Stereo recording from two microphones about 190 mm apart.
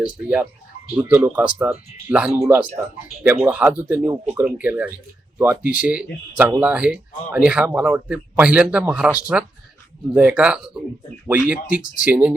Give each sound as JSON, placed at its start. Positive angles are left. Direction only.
{"t": 0.9, "sound": "a man's voice", "side_deg": -10}
{"t": 5.6, "sound": "speech", "side_deg": 45}
{"t": 5.9, "sound": "a man's voice", "side_deg": -5}
{"t": 10.2, "sound": "a man's voice", "side_deg": -5}
{"t": 11.6, "sound": "speech", "side_deg": 45}
{"t": 12.0, "sound": "a man's voice", "side_deg": -5}